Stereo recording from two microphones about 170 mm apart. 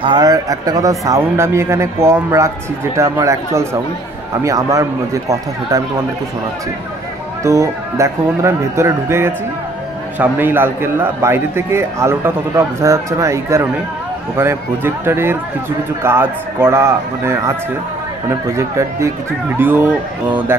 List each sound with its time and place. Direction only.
0.0 s a man's voice: 25° right (ahead or behind)
7.4 s a man's voice: 15° right (ahead or behind)